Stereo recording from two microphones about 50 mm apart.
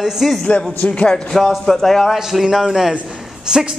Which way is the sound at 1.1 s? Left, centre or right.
Centre.